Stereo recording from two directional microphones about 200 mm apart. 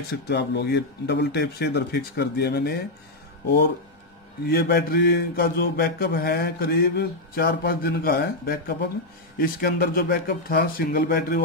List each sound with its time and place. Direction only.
0.1 s speech: 55° left (ahead or behind)
4.5 s mantra: 50° left (ahead or behind)